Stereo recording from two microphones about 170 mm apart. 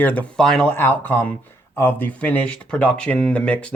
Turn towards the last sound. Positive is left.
turn(degrees=5)  # may be behind; listen again after turning